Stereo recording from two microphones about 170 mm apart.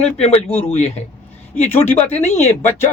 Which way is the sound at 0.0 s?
40° left (ahead or behind).